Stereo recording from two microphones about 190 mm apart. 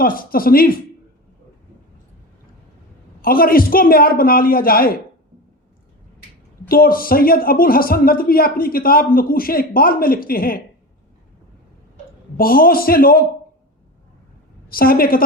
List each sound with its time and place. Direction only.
0.0 s a man's voice: 50° left (ahead or behind)
3.2 s a man's voice: 50° left (ahead or behind)
6.7 s a man's voice: 50° left (ahead or behind)
12.4 s a man's voice: 50° left (ahead or behind)
14.7 s a man's voice: 50° left (ahead or behind)